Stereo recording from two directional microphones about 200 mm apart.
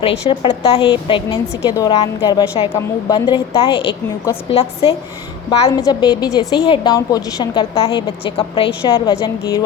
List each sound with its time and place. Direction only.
0.0 s a woman's voice: 25° left (ahead or behind)